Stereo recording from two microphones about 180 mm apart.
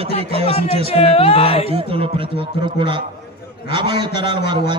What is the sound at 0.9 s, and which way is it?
Speech, 35° left (ahead or behind).